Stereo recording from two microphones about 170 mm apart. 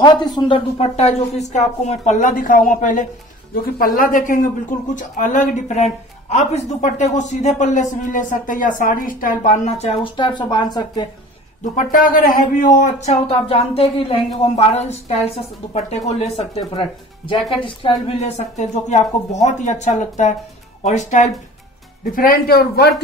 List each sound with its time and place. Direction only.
0.0 s speech: 25° left (ahead or behind)
0.7 s speech: 40° left (ahead or behind)
3.5 s speech: 60° left (ahead or behind); by 11.1 s 25° left (ahead or behind)
11.7 s speech: 50° left (ahead or behind)
22.1 s speech: 60° left (ahead or behind)